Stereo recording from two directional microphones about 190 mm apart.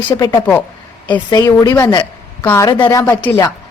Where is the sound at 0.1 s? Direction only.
20° left (ahead or behind).